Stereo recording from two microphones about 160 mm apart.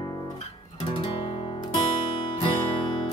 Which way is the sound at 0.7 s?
30° left (ahead or behind).